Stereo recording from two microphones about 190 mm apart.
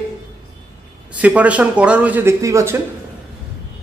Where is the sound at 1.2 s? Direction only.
5° right (ahead or behind).